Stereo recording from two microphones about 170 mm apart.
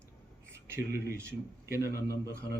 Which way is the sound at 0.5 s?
15° right (ahead or behind).